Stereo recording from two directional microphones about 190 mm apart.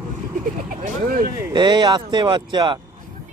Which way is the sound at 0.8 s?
45° right (ahead or behind).